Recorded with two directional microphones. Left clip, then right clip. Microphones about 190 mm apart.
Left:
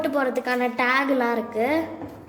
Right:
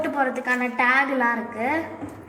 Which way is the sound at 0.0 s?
90° left.